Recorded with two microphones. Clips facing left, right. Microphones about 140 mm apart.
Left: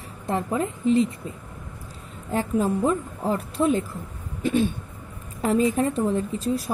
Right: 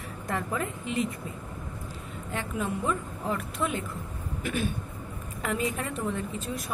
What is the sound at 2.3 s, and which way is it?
A woman's voice, 35° left (ahead or behind).